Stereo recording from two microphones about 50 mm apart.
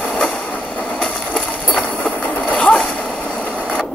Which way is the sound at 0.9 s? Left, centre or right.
Left.